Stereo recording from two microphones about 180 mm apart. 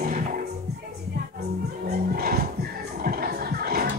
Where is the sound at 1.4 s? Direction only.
60° right (ahead or behind).